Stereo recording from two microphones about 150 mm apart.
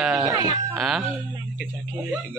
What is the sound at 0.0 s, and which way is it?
Cat, 5° right (ahead or behind).